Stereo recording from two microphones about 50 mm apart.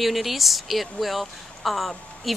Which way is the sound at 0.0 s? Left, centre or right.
Centre.